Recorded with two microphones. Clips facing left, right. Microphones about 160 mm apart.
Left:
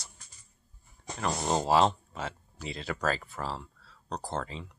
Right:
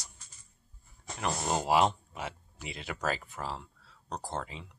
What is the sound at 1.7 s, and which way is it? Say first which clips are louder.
Speech: left 1 dB; 15° right (ahead or behind).